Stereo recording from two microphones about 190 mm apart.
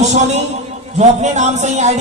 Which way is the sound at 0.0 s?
35° right (ahead or behind).